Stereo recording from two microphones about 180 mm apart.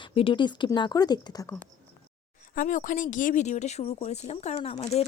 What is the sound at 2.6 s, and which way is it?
Speech, 45° left (ahead or behind).